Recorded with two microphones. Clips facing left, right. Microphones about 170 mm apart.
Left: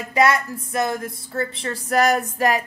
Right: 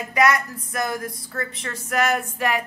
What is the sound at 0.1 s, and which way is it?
Speech, 30° left (ahead or behind).